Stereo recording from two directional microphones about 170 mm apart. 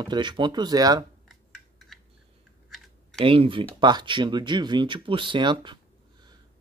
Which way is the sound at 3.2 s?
30° right (ahead or behind).